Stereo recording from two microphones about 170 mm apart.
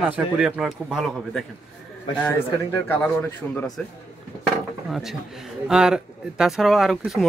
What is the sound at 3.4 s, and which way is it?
Speech, centre (ahead or behind).